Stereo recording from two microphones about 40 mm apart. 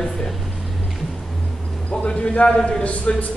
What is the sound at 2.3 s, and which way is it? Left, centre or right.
Speech, left.